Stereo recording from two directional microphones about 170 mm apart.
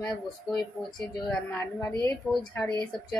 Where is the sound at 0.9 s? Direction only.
25° left (ahead or behind).